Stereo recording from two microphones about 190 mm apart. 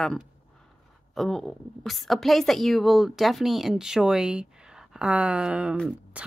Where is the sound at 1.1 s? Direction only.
Centre (ahead or behind).